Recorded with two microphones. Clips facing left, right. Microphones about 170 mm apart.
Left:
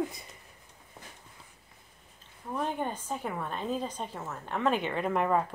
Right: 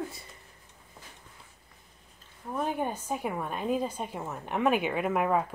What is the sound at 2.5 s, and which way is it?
A woman's voice, 10° right (ahead or behind).